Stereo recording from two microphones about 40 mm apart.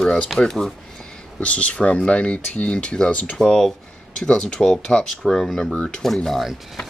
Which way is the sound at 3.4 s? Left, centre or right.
Centre.